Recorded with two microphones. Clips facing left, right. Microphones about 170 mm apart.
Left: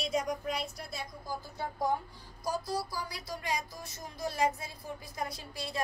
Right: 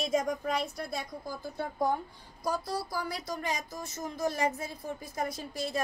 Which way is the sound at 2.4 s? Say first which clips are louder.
Right 1 dB; 55° right (ahead or behind).